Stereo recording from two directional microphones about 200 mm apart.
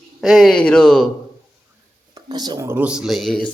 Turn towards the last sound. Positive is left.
turn(degrees=0)  # may be behind; listen again after turning